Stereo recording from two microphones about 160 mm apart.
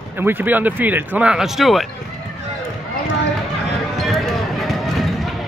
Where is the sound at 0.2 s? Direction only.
10° right (ahead or behind).